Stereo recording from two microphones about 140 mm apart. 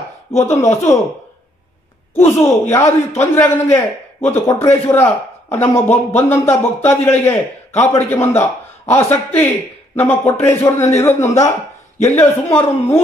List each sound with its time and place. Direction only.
0.4 s a man's voice: 20° left (ahead or behind)
2.1 s a man's voice: 20° left (ahead or behind)